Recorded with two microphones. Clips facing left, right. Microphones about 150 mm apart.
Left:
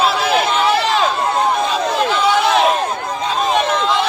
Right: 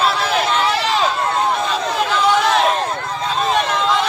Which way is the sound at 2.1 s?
5° left (ahead or behind).